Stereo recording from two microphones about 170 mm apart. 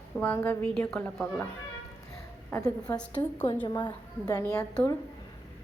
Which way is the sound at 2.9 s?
5° left (ahead or behind).